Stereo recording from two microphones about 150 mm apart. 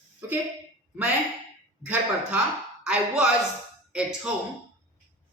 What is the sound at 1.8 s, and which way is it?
Speech, 10° right (ahead or behind).